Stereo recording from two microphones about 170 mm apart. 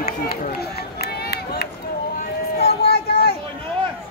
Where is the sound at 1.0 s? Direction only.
70° left (ahead or behind).